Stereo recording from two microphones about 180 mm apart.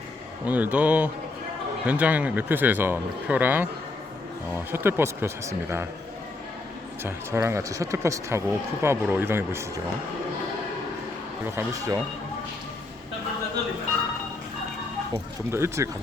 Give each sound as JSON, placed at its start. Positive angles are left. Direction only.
{"t": 0.4, "sound": "speech", "side_deg": -10}
{"t": 7.0, "sound": "speech", "side_deg": -15}
{"t": 11.5, "sound": "speech", "side_deg": -20}
{"t": 15.5, "sound": "speech", "side_deg": -15}